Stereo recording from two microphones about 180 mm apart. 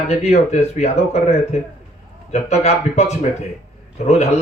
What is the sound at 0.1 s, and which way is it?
Speech, 35° left (ahead or behind).